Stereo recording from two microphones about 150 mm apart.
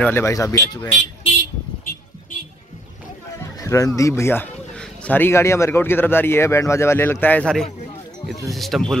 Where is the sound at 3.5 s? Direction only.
20° left (ahead or behind); by 8.9 s centre (ahead or behind).